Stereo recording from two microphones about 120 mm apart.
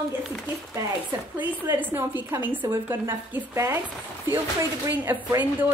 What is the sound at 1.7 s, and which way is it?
A woman's voice, 15° right (ahead or behind).